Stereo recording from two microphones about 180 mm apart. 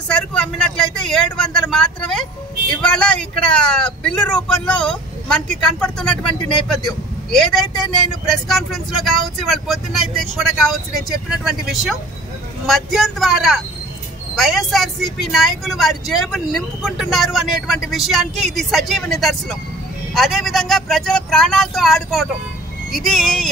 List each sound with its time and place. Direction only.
0.1 s speech: 5° left (ahead or behind)
7.7 s speech: 25° left (ahead or behind)
8.5 s speech: centre (ahead or behind)